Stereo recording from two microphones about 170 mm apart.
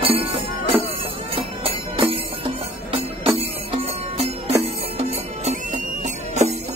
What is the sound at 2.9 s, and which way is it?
Music, 35° right (ahead or behind).